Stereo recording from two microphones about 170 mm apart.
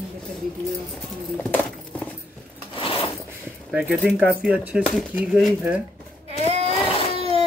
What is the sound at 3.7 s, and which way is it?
Speech, centre (ahead or behind).